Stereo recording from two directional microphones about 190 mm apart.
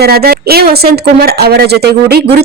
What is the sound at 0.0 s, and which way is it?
A woman's voice, 55° right (ahead or behind).